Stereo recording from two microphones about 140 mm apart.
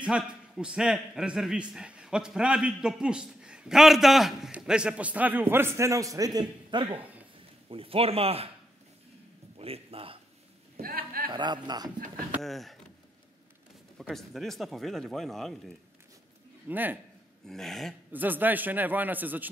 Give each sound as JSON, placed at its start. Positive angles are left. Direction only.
{"t": 0.0, "sound": "a man's voice", "side_deg": -5}
{"t": 7.0, "sound": "a sound", "side_deg": -10}
{"t": 7.7, "sound": "speech", "side_deg": -40}
{"t": 9.6, "sound": "a sound", "side_deg": -45}
{"t": 10.8, "sound": "a sound", "side_deg": -90}
{"t": 11.3, "sound": "a man's voice", "side_deg": -30}
{"t": 12.4, "sound": "speech", "side_deg": 0}
{"t": 13.9, "sound": "speech", "side_deg": 0}
{"t": 16.6, "sound": "a man's voice", "side_deg": -15}
{"t": 17.5, "sound": "speech", "side_deg": 0}
{"t": 18.1, "sound": "a man's voice", "side_deg": -15}